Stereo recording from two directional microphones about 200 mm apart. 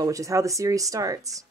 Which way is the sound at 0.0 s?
15° right (ahead or behind).